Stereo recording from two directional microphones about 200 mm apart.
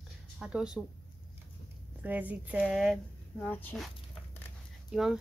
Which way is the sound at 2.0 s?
10° right (ahead or behind).